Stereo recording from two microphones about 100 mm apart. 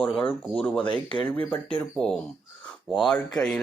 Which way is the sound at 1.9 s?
5° left (ahead or behind).